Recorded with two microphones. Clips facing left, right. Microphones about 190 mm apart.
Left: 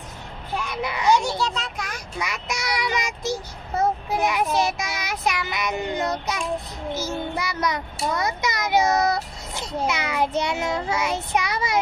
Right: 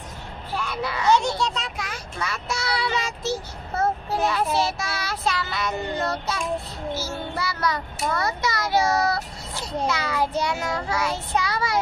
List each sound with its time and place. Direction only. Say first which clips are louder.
0.7 s a child's voice: even; 15° left (ahead or behind)
1.4 s a sound: even; centre (ahead or behind)
2.1 s speech: even; 15° left (ahead or behind)
9.8 s child singing: left 1 dB; 20° left (ahead or behind)